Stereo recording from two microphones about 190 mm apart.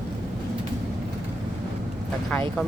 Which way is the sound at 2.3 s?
5° left (ahead or behind).